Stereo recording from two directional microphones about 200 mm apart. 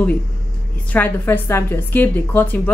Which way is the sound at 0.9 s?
10° left (ahead or behind).